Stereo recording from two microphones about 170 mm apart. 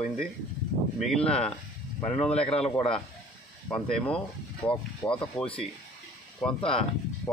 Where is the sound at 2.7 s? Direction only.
30° left (ahead or behind).